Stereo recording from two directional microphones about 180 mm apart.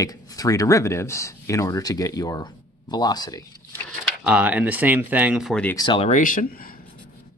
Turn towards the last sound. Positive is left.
turn(degrees=55)  # may be behind; listen again after turning